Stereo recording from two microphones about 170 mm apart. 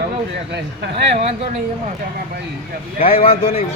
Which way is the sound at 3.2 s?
35° left (ahead or behind).